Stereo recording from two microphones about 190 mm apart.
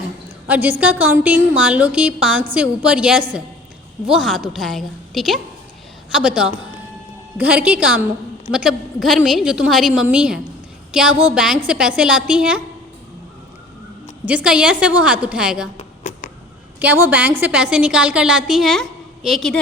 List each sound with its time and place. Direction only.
0.4 s a woman's voice: 10° right (ahead or behind)
14.3 s a woman's voice: 5° right (ahead or behind)
15.8 s a sound: 40° left (ahead or behind)
16.8 s a woman's voice: 10° right (ahead or behind)